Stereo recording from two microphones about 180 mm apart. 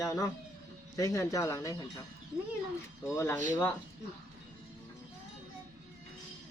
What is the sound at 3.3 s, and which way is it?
Speech, 45° right (ahead or behind).